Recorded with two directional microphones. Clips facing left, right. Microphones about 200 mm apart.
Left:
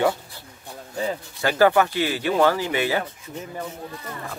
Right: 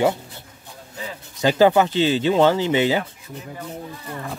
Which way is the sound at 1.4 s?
20° right (ahead or behind).